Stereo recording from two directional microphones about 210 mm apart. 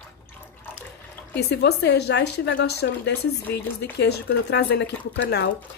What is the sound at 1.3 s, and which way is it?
A woman's voice, 50° left (ahead or behind).